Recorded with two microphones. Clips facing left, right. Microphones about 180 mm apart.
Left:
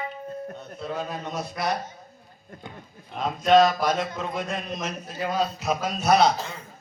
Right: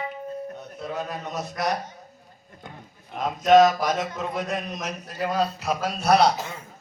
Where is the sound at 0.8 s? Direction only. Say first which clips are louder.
Even; 5° right (ahead or behind).